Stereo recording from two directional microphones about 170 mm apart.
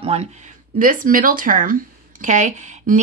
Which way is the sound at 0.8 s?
55° right (ahead or behind).